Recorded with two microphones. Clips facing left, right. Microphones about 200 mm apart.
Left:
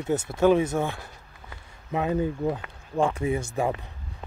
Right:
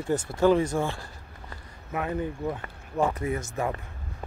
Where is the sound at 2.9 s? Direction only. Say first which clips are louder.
Left 2 dB; 30° left (ahead or behind).